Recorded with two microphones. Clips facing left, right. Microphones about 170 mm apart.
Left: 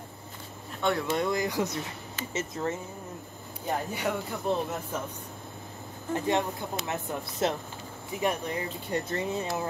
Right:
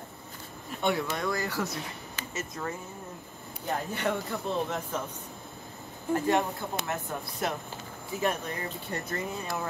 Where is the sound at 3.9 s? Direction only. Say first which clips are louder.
Right 1 dB; 10° left (ahead or behind).